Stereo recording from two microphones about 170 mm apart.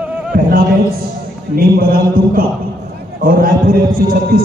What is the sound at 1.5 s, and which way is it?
A man's voice, 60° right (ahead or behind).